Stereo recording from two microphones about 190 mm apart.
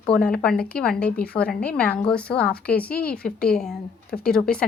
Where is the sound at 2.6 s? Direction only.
55° left (ahead or behind).